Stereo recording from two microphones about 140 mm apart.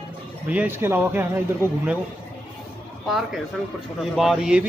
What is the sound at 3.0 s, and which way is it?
Speech, centre (ahead or behind).